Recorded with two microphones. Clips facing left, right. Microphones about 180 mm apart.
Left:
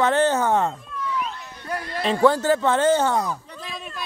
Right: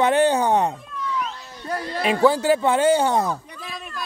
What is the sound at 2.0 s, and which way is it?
Speech, 10° right (ahead or behind).